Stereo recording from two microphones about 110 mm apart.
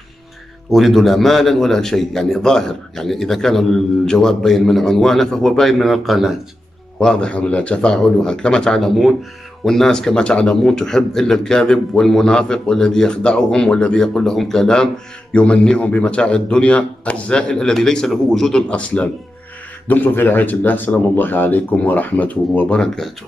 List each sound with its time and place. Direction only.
0.7 s a man's voice: centre (ahead or behind)